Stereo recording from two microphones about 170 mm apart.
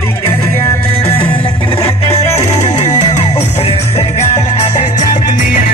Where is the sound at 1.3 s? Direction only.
30° left (ahead or behind).